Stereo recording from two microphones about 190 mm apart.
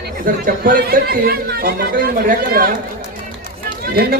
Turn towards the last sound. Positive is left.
turn(degrees=-50)  # may be behind; listen again after turning